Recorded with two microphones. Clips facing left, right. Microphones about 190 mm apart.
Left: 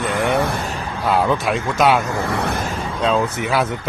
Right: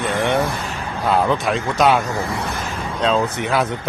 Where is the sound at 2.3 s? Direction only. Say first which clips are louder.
Left 4 dB; 65° left (ahead or behind).